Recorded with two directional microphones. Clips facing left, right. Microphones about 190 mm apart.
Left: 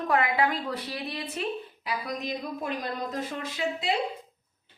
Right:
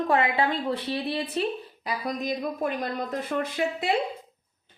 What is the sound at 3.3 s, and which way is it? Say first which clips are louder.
Speech: right 4 dB; 55° right (ahead or behind).